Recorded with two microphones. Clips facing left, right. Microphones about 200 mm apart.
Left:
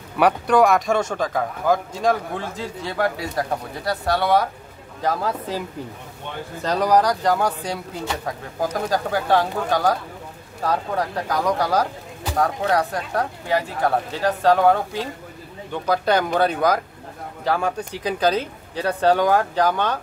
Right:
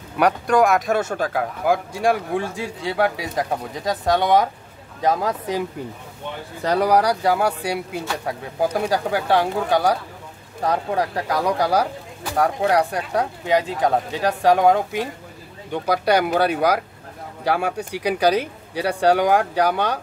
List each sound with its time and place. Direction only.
0.2 s speech: centre (ahead or behind); by 5.6 s 15° right (ahead or behind)
6.6 s speech: 10° right (ahead or behind)